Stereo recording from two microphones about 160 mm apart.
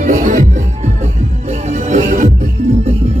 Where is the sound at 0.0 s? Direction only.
50° right (ahead or behind).